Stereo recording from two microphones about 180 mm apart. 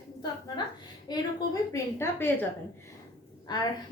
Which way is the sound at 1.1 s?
25° left (ahead or behind).